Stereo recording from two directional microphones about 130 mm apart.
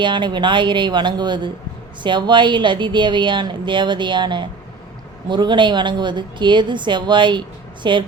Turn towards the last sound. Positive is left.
turn(degrees=-40)  # may be behind; listen again after turning